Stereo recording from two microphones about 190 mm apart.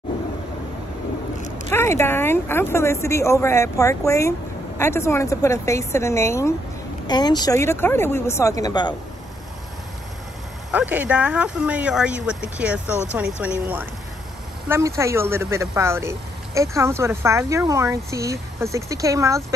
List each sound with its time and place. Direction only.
1.7 s speech: 10° left (ahead or behind)
10.7 s speech: 10° right (ahead or behind)